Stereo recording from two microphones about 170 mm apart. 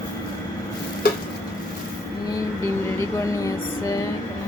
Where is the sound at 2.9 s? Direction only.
20° left (ahead or behind).